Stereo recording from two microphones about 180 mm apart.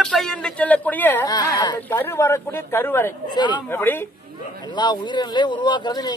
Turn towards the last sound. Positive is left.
turn(degrees=25)  # may be behind; listen again after turning